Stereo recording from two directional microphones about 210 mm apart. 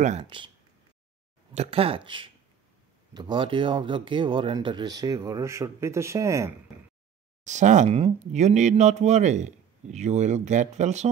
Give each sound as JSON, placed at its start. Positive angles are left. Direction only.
{"t": 0.0, "sound": "speech", "side_deg": -30}
{"t": 1.5, "sound": "speech", "side_deg": -30}
{"t": 7.4, "sound": "speech", "side_deg": -35}